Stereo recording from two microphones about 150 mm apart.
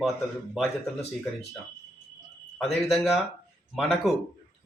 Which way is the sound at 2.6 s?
Centre (ahead or behind).